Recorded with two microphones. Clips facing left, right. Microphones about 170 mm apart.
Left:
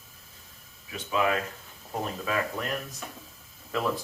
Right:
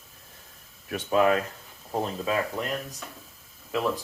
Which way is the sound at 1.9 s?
25° right (ahead or behind).